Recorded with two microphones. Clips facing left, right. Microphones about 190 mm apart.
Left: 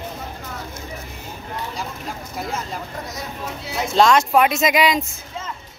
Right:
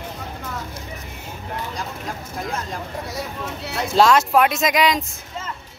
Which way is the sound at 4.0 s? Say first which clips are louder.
Even; 5° right (ahead or behind).